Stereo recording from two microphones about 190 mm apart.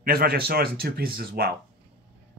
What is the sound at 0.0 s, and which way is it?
Speech, 50° right (ahead or behind).